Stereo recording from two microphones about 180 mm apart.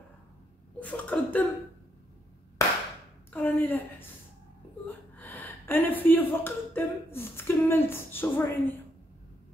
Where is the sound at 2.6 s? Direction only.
15° left (ahead or behind).